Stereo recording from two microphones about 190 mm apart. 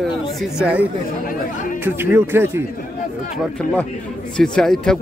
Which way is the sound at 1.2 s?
45° left (ahead or behind).